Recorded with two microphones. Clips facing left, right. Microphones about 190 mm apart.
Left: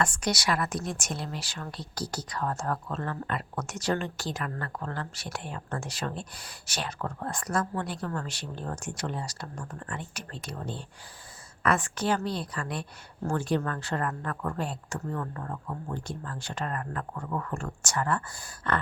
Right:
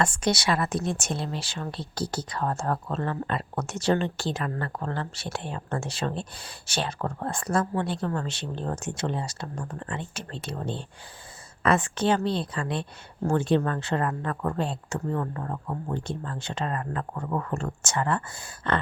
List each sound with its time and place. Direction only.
0.0 s speech: 25° right (ahead or behind)